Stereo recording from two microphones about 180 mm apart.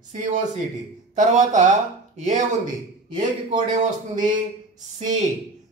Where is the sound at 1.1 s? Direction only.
45° right (ahead or behind).